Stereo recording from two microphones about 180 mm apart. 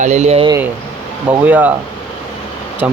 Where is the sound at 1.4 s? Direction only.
10° right (ahead or behind).